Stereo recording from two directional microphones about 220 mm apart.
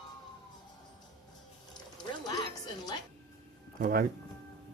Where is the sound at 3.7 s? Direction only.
40° right (ahead or behind).